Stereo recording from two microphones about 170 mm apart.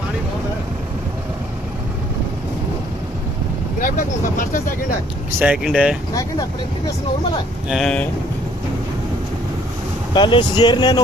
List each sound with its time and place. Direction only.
3.8 s speech: 50° left (ahead or behind)
5.4 s speech: 5° right (ahead or behind)
7.7 s speech: 5° left (ahead or behind)
10.1 s speech: 30° left (ahead or behind)